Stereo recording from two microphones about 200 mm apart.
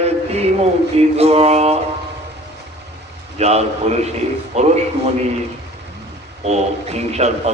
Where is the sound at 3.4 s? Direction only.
30° right (ahead or behind).